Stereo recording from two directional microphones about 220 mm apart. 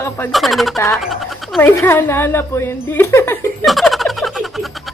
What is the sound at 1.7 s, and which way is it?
A woman's voice, 10° left (ahead or behind).